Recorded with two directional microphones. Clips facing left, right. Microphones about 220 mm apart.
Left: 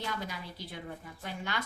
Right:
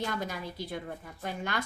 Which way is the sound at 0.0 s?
45° right (ahead or behind).